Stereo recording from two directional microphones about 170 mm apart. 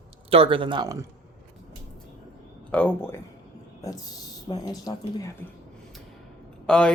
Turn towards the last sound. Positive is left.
turn(degrees=5)  # may be behind; listen again after turning